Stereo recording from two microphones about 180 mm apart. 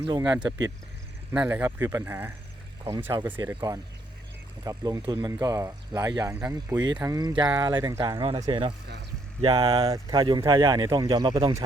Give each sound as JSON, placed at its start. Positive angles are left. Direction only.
{"t": 0.0, "sound": "speech", "side_deg": -25}
{"t": 1.3, "sound": "speech", "side_deg": -10}
{"t": 4.6, "sound": "speech", "side_deg": -20}
{"t": 9.9, "sound": "speech", "side_deg": -20}